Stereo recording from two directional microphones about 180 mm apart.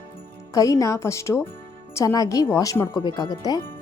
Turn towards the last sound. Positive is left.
turn(degrees=20)  # may be behind; listen again after turning